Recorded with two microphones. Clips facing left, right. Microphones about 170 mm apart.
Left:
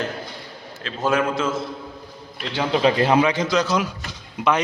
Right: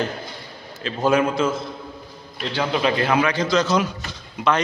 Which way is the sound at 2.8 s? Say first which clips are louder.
Left 4 dB; 20° left (ahead or behind).